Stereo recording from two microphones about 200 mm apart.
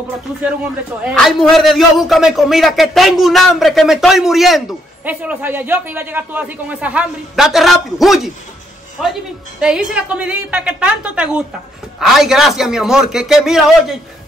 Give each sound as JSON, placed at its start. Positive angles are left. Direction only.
{"t": 1.1, "sound": "a man's voice", "side_deg": 0}